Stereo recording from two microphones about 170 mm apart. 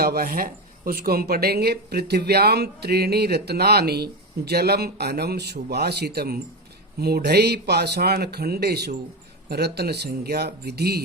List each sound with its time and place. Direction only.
0.0 s speech: 65° right (ahead or behind)